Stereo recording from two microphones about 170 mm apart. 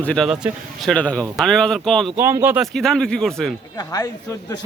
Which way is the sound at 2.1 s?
15° right (ahead or behind).